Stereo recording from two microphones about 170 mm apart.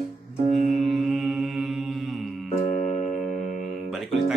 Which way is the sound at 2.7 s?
45° left (ahead or behind).